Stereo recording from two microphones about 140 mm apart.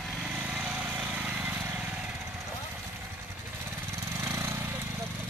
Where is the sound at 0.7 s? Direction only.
15° right (ahead or behind).